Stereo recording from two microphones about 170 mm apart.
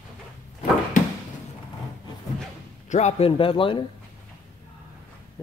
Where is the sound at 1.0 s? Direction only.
45° left (ahead or behind).